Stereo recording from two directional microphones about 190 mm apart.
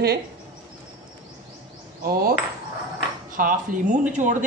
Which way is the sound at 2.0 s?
55° right (ahead or behind).